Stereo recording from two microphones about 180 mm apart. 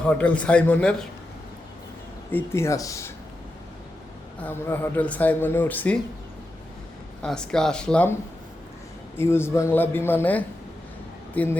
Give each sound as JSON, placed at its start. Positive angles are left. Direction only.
{"t": 0.0, "sound": "speech", "side_deg": 5}
{"t": 2.3, "sound": "speech", "side_deg": 15}
{"t": 4.4, "sound": "speech", "side_deg": 10}
{"t": 7.2, "sound": "speech", "side_deg": 5}
{"t": 9.1, "sound": "speech", "side_deg": 15}